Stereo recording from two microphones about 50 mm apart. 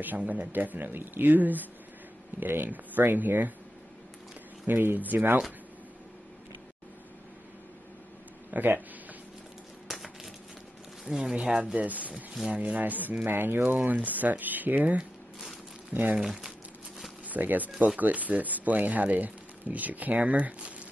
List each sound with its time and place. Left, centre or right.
0.0 s speech: right
4.6 s speech: right
8.5 s speech: right
9.9 s a sound: centre
11.1 s speech: centre
11.6 s speech: right
13.2 s speech: right
15.9 s speech: right
16.2 s speech: centre
17.3 s speech: right